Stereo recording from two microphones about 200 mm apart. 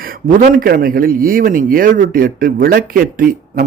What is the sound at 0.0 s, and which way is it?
A man's voice, 40° right (ahead or behind).